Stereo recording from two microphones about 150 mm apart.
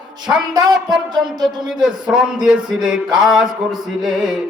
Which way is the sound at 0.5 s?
25° right (ahead or behind).